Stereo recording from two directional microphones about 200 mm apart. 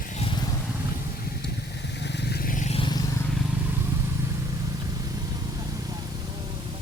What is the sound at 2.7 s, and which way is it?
Vehicle, 25° left (ahead or behind).